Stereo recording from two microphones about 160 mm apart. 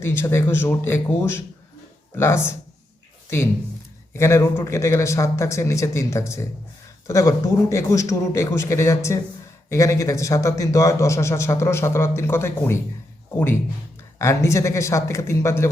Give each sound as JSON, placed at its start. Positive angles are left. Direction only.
{"t": 0.0, "sound": "a man's voice", "side_deg": 15}
{"t": 14.2, "sound": "a man's voice", "side_deg": 15}